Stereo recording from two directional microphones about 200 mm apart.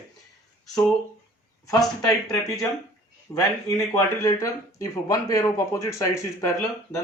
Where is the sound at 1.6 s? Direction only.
15° left (ahead or behind).